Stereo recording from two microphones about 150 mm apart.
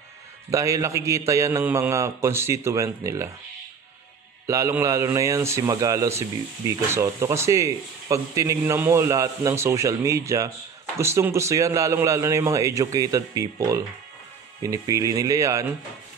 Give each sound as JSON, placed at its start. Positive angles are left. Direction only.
{"t": 0.5, "sound": "speech", "side_deg": -20}
{"t": 4.5, "sound": "speech", "side_deg": -20}